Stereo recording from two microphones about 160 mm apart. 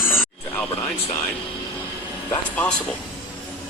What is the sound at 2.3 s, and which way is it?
Speech, 10° left (ahead or behind).